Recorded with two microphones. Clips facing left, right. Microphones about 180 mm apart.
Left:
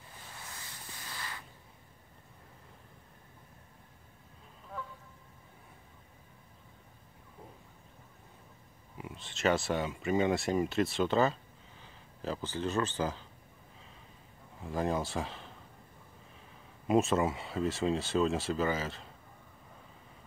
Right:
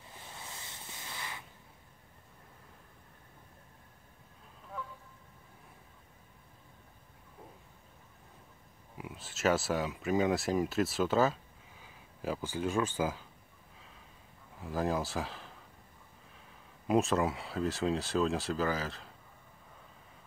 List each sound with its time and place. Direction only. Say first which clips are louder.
0.4 s sanding: even; 20° right (ahead or behind)
8.9 s speech: even; 5° right (ahead or behind)
14.6 s speech: even; centre (ahead or behind)
16.8 s speech: left 1 dB; centre (ahead or behind)